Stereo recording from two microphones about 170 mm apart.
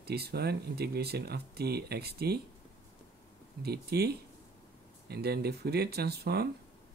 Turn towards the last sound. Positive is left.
turn(degrees=-70)  # may be behind; listen again after turning